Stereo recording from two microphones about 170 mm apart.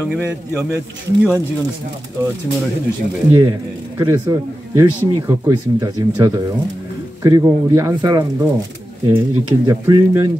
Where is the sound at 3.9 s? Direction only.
20° right (ahead or behind).